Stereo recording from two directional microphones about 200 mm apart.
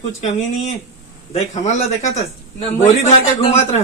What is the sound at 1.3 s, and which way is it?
Speech, 35° left (ahead or behind).